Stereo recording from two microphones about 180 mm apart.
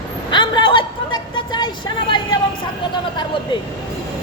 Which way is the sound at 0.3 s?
25° left (ahead or behind).